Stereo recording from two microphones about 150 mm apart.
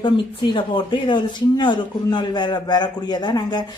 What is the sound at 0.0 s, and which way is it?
Speech, 30° left (ahead or behind).